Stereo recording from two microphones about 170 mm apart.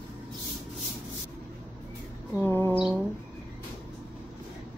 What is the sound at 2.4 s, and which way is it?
Vehicle, 10° left (ahead or behind).